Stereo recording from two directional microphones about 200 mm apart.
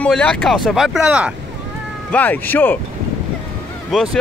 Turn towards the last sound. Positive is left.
turn(degrees=0)  # may be behind; listen again after turning